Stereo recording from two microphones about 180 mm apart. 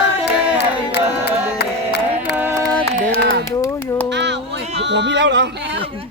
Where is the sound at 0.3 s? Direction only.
70° left (ahead or behind).